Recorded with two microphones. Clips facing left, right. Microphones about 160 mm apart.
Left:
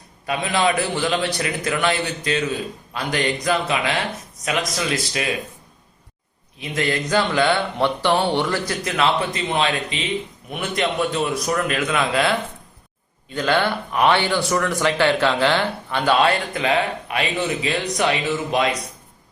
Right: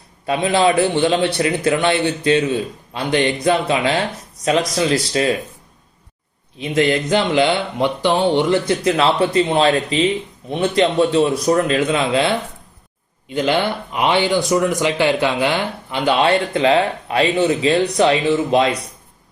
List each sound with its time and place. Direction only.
0.3 s speech: 30° right (ahead or behind)
6.6 s speech: 25° right (ahead or behind)